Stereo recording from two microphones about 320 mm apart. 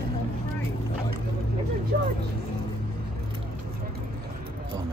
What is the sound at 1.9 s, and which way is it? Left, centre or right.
Speech, right.